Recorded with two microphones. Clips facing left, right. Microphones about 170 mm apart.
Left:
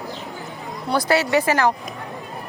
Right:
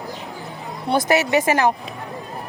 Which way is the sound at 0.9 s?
20° right (ahead or behind).